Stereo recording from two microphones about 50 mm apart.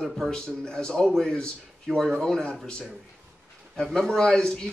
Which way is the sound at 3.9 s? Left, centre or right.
Centre.